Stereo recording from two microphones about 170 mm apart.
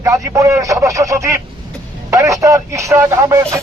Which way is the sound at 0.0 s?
20° right (ahead or behind).